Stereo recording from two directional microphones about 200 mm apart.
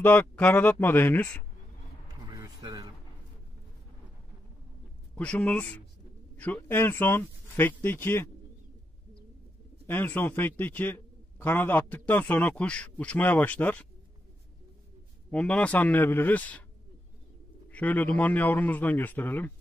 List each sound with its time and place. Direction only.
0.0 s a man's voice: 10° left (ahead or behind)
2.2 s a sound: 20° right (ahead or behind)
5.1 s a man's voice: 5° left (ahead or behind)
9.8 s a man's voice: 10° left (ahead or behind)
15.3 s a man's voice: 5° left (ahead or behind)
17.6 s a man's voice: 10° left (ahead or behind)